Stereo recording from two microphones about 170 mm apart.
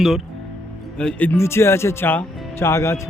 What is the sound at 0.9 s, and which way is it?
Speech, 5° left (ahead or behind).